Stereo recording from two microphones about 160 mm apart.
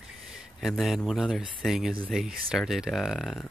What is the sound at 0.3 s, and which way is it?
A man's voice, centre (ahead or behind).